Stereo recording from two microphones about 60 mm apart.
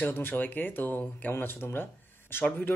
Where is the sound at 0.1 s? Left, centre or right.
Left.